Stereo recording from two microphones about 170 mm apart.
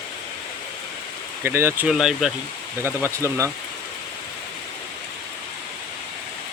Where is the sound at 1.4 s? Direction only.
15° right (ahead or behind).